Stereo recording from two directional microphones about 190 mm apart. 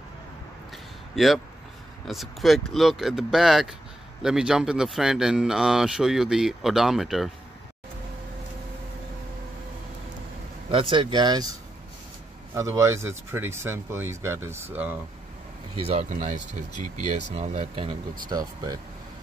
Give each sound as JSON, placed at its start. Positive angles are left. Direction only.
{"t": 1.1, "sound": "a man's voice", "side_deg": 0}
{"t": 10.7, "sound": "speech", "side_deg": -25}
{"t": 12.5, "sound": "speech", "side_deg": -15}
{"t": 15.9, "sound": "speech", "side_deg": -35}
{"t": 18.3, "sound": "speech", "side_deg": -20}